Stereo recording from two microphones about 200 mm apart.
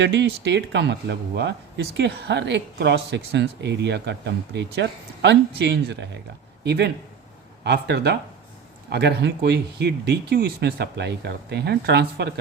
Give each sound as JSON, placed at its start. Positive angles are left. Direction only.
{"t": 0.0, "sound": "speech", "side_deg": -60}